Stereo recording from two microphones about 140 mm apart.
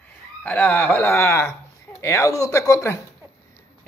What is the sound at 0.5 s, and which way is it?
Speech, 15° left (ahead or behind).